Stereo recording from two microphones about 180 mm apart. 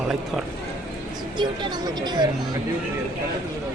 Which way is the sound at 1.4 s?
25° right (ahead or behind).